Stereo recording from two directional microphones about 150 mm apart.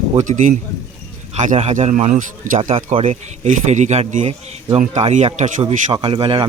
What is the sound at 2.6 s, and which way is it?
Speech, 40° right (ahead or behind).